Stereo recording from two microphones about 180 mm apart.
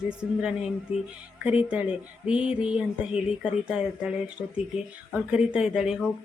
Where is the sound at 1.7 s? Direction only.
5° right (ahead or behind).